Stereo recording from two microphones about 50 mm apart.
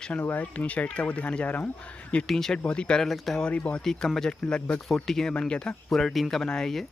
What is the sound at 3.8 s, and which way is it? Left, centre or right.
Speech, centre.